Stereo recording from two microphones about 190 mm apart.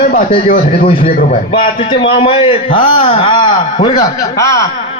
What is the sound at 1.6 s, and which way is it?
A man's voice, 25° left (ahead or behind).